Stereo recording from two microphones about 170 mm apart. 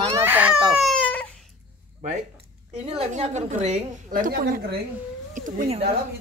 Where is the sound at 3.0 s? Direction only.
40° right (ahead or behind).